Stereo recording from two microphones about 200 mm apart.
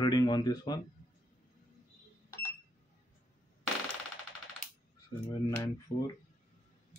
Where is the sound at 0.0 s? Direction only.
20° left (ahead or behind).